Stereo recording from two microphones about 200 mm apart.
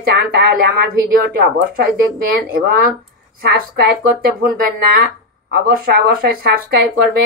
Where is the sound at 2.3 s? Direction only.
50° right (ahead or behind).